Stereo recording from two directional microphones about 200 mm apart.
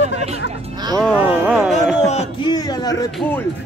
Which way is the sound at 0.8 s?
20° right (ahead or behind).